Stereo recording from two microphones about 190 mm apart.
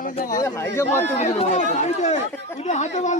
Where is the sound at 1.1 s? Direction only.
35° left (ahead or behind).